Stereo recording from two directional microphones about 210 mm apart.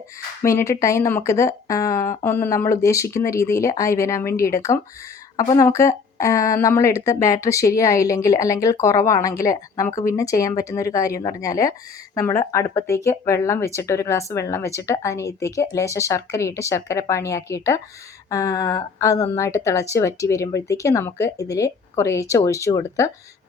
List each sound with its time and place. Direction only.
0.4 s speech: 15° left (ahead or behind)